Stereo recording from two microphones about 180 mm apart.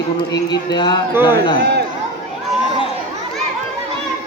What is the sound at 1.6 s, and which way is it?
Speech, 65° right (ahead or behind).